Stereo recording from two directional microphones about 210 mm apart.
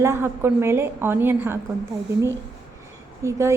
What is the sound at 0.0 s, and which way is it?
A woman's voice, 10° right (ahead or behind).